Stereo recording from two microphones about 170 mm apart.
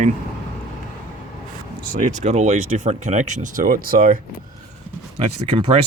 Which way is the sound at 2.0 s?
45° right (ahead or behind).